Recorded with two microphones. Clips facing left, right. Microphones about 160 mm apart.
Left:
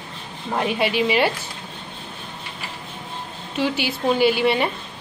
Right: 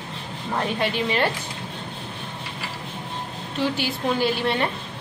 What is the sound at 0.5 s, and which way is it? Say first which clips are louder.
Speech: left 4 dB; 10° left (ahead or behind).